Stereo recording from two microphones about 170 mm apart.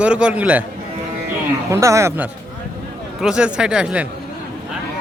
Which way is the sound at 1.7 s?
15° right (ahead or behind).